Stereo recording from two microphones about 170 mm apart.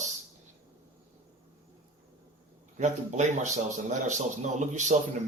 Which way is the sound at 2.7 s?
45° right (ahead or behind).